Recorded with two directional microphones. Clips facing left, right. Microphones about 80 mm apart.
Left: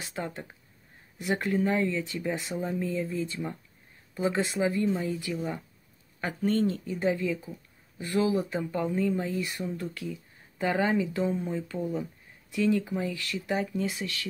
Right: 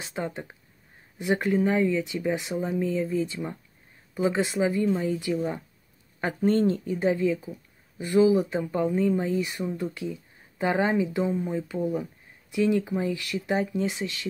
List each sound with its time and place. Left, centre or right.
0.0 s speech: right